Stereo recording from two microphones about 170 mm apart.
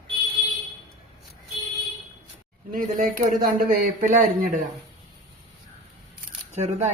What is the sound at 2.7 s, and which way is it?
Speech, 55° right (ahead or behind).